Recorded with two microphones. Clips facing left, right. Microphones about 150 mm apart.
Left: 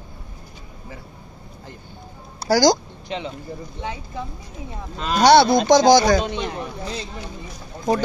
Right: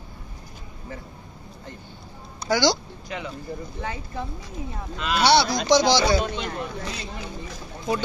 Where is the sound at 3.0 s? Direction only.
25° left (ahead or behind).